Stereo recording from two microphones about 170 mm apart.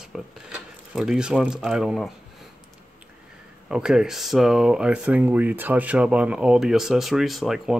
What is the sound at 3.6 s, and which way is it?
Speech, 5° right (ahead or behind).